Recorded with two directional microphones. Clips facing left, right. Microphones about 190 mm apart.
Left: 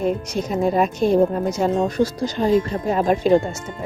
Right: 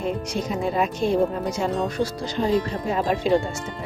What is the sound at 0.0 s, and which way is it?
Speech, 45° left (ahead or behind).